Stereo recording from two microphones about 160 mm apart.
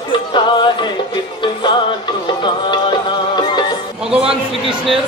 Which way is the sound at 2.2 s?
30° left (ahead or behind).